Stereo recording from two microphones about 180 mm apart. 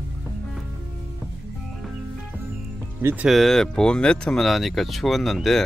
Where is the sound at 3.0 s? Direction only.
10° right (ahead or behind).